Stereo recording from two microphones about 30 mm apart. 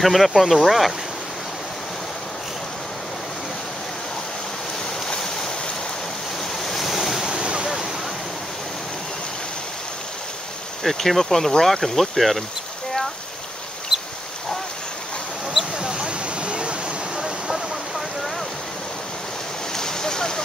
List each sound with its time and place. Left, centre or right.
0.0 s speech: centre
5.0 s waves: centre
6.6 s waves: centre
6.9 s waves: centre
7.2 s waves: right
10.8 s speech: centre
13.9 s a sound: centre
15.8 s mouse: right
16.4 s waterfall: right
17.2 s a sound: centre
19.7 s boat: centre